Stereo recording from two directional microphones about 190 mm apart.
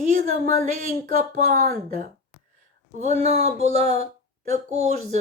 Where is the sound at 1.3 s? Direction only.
50° right (ahead or behind).